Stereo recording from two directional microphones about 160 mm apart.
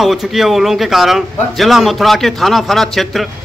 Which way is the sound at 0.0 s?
Centre (ahead or behind).